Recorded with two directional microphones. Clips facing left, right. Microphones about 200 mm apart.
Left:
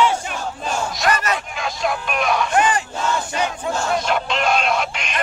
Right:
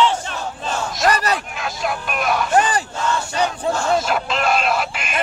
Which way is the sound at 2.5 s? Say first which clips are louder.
Right 2 dB; 35° right (ahead or behind).